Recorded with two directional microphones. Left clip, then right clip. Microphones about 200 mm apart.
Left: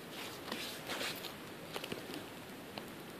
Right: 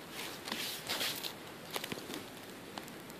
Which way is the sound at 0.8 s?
45° right (ahead or behind).